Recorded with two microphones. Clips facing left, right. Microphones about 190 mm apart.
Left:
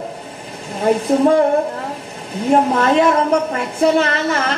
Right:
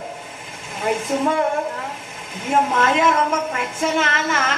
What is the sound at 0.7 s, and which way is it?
Speech, 35° left (ahead or behind).